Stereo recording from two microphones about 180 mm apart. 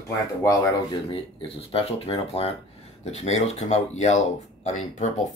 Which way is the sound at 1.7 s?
35° left (ahead or behind).